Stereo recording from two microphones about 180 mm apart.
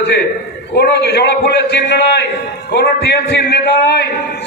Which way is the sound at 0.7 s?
70° left (ahead or behind).